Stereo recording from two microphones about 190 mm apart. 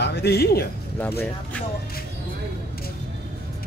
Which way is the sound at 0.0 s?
60° left (ahead or behind).